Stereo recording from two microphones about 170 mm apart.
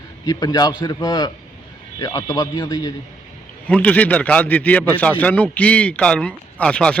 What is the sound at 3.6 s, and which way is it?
Speech, 10° left (ahead or behind).